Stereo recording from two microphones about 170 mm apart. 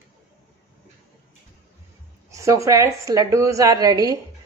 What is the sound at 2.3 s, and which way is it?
A woman's voice, 20° right (ahead or behind).